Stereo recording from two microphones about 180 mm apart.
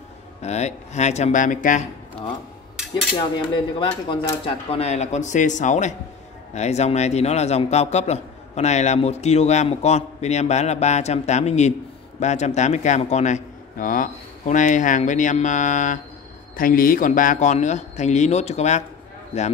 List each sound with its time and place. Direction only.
0.4 s a man's voice: 40° left (ahead or behind)
3.2 s cutlery: 25° left (ahead or behind)
4.1 s a man's voice: 25° left (ahead or behind)